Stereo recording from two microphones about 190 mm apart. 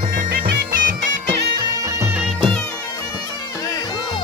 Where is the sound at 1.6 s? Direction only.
15° right (ahead or behind).